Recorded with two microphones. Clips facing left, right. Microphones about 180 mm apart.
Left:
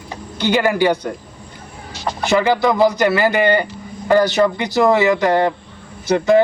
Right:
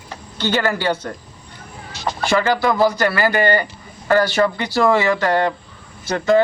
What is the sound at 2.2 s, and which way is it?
Speech, 15° left (ahead or behind).